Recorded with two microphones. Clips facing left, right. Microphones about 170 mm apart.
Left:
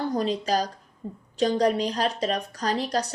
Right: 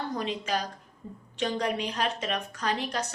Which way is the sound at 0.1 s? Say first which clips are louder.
Left 6 dB; 35° left (ahead or behind).